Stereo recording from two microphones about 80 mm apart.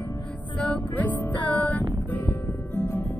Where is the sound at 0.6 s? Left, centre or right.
Centre.